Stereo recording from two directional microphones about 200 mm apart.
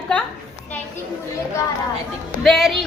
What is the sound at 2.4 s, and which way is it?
Speech, centre (ahead or behind).